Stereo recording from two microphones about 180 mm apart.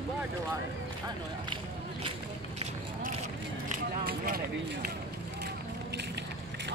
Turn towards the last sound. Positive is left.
turn(degrees=-55)  # may be behind; listen again after turning